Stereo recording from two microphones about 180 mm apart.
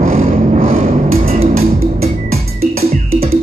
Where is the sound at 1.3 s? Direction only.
35° right (ahead or behind).